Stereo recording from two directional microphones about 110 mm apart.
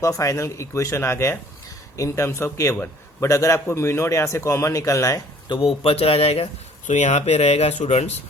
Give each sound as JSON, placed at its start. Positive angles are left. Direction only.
{"t": 0.0, "sound": "a man's voice", "side_deg": 30}
{"t": 5.5, "sound": "speech", "side_deg": 55}
{"t": 6.9, "sound": "speech", "side_deg": 90}